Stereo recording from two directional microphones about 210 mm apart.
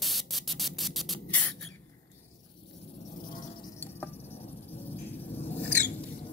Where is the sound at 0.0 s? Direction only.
Centre (ahead or behind).